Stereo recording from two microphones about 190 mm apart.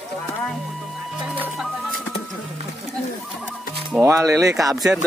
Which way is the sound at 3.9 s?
15° right (ahead or behind).